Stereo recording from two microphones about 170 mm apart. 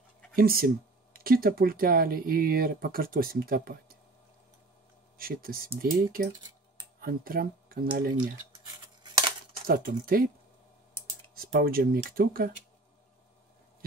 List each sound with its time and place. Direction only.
0.4 s speech: 60° right (ahead or behind)
5.1 s speech: 60° right (ahead or behind)
9.7 s speech: 60° right (ahead or behind)
11.3 s speech: 60° right (ahead or behind)